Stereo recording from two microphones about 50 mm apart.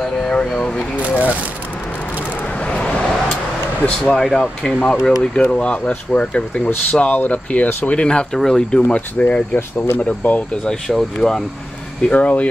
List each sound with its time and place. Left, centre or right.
0.0 s speech: centre
2.6 s vehicle: left
3.8 s speech: left
4.2 s speech: centre
9.6 s speech: left
9.9 s speech: left
10.7 s speech: centre
12.1 s speech: left